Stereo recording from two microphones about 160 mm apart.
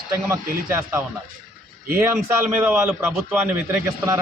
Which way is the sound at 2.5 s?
15° right (ahead or behind).